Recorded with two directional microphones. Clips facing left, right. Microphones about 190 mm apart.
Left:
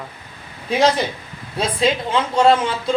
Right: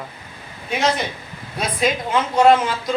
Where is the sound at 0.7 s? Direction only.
35° left (ahead or behind).